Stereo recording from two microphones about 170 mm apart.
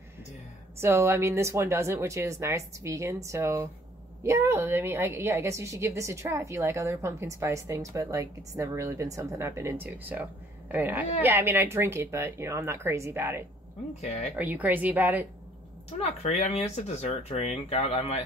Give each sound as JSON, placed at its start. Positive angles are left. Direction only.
{"t": 0.7, "sound": "a woman's voice", "side_deg": -15}
{"t": 16.2, "sound": "speech", "side_deg": 40}